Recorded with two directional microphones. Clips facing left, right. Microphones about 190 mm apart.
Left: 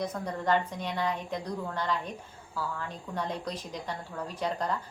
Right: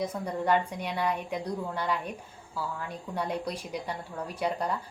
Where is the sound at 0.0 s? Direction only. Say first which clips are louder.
Right 2 dB; 10° right (ahead or behind).